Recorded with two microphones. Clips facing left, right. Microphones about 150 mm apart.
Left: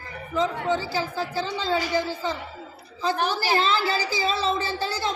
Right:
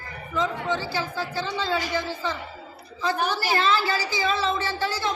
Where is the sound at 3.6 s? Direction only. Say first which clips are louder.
Even; 30° left (ahead or behind).